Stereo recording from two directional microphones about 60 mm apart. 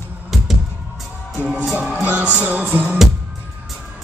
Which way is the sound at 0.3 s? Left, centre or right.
Centre.